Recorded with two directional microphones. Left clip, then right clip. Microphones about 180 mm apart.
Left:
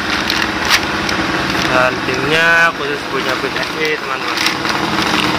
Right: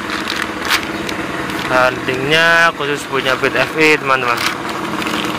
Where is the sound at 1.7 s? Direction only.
25° right (ahead or behind).